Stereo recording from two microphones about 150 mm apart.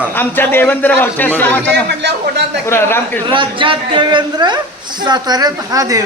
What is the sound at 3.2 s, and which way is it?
A woman's voice, 35° right (ahead or behind).